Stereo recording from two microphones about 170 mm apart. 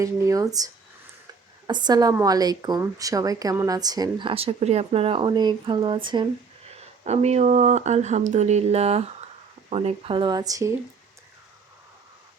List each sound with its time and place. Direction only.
0.0 s a woman's voice: 20° right (ahead or behind)
7.0 s a woman's voice: 40° right (ahead or behind); by 10.7 s 20° right (ahead or behind)